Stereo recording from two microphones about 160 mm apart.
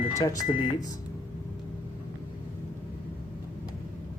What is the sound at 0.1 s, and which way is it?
Speech, 20° left (ahead or behind).